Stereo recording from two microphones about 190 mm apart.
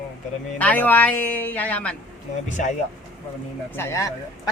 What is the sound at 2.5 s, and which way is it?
Speech, 40° left (ahead or behind).